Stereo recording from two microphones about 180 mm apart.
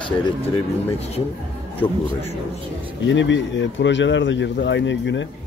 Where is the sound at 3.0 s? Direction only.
90° left.